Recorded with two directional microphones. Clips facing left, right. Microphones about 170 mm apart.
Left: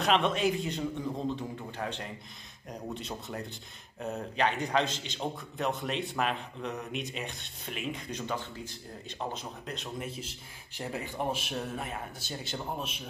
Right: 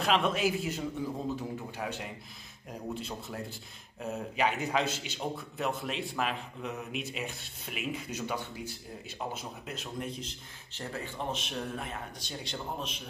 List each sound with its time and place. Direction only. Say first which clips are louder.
0.0 s a man's voice: left 1 dB; centre (ahead or behind)